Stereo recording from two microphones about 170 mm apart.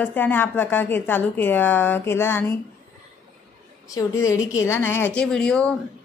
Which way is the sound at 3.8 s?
20° left (ahead or behind).